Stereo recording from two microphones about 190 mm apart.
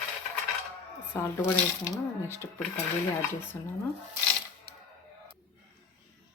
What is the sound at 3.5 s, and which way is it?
Speech, 10° left (ahead or behind).